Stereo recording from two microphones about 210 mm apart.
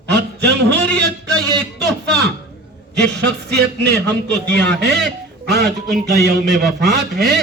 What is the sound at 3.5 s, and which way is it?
A man's voice, 50° right (ahead or behind).